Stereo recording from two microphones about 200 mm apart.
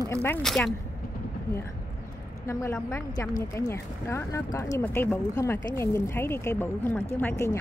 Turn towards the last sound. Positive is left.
turn(degrees=10)  # may be behind; listen again after turning